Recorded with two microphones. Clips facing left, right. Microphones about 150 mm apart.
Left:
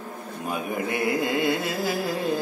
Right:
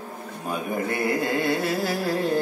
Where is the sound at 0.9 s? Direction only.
15° left (ahead or behind).